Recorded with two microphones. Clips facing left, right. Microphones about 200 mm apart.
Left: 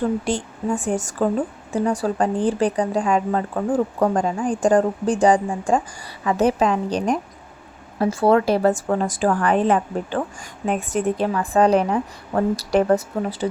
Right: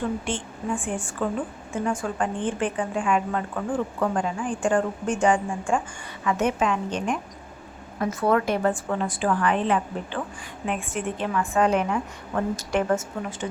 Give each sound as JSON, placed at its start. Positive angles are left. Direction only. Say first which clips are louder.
{"t": 0.3, "sound": "speech", "louder": "left 5 dB", "side_deg": 40}